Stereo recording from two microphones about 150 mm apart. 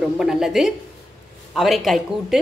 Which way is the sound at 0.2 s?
5° right (ahead or behind).